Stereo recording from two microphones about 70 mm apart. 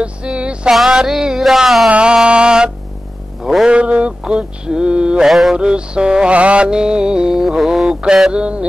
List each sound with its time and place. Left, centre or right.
0.0 s music: centre
0.7 s music: centre
1.9 s music: centre
3.6 s a sound: centre
4.2 s mantra: centre
5.6 s music: centre